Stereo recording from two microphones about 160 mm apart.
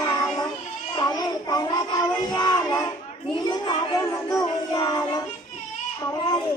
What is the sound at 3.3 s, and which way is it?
Chatter, 25° left (ahead or behind).